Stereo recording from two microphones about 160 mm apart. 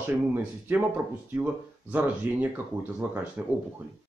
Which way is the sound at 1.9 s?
10° right (ahead or behind).